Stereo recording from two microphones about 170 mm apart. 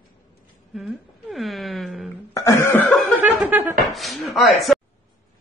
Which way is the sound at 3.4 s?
10° right (ahead or behind).